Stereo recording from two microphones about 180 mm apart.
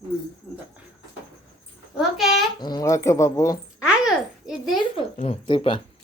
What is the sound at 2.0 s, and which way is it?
Speech, centre (ahead or behind).